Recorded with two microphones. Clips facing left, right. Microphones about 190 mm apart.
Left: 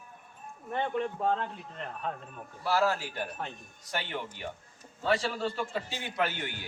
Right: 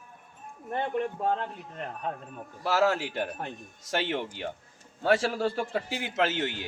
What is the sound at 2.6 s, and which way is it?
A man's voice, 80° right.